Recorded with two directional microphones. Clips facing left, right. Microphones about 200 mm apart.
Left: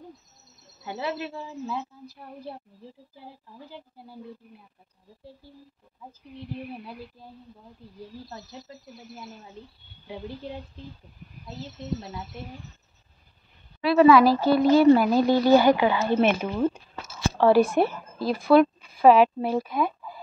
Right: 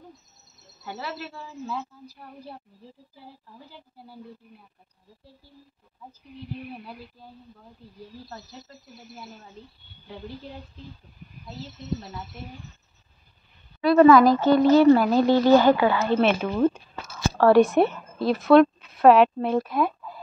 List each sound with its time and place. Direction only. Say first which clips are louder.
0.8 s speech: left 4 dB; 15° left (ahead or behind)
13.8 s a woman's voice: right 2 dB; 5° left (ahead or behind)